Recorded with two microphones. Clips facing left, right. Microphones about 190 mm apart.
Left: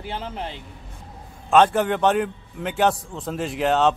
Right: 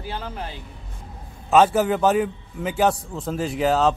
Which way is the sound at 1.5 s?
5° right (ahead or behind).